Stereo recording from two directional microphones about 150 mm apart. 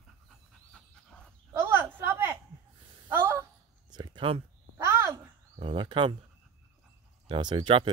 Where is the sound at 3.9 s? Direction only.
30° right (ahead or behind).